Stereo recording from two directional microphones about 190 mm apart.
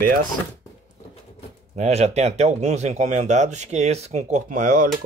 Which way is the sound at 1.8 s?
35° right (ahead or behind).